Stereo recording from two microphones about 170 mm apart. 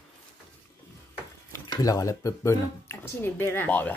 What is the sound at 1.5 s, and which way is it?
Speech, 20° left (ahead or behind).